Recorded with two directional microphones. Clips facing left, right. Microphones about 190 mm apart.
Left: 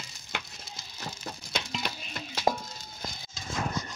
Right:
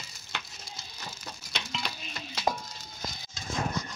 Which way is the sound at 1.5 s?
50° left (ahead or behind).